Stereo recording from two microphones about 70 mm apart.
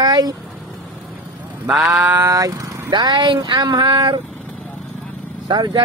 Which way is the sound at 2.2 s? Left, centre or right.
Right.